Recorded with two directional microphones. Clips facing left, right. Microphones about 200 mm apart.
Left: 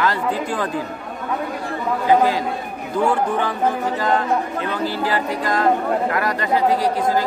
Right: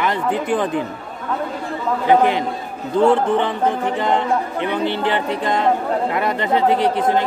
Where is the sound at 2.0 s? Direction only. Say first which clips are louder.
Right 1 dB; 20° right (ahead or behind).